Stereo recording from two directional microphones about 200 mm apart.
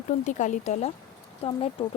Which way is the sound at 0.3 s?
40° left (ahead or behind).